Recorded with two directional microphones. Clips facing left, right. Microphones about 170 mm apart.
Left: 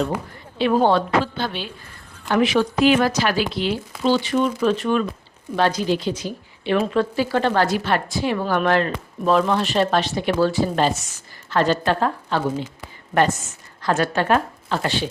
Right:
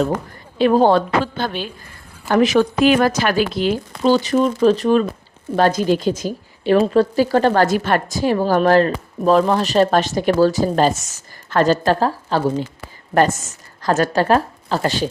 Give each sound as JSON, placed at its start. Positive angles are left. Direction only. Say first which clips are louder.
{"t": 0.6, "sound": "a woman's voice", "louder": "right 4 dB", "side_deg": -40}